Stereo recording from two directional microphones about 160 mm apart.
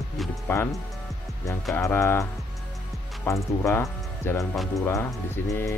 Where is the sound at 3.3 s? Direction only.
15° left (ahead or behind).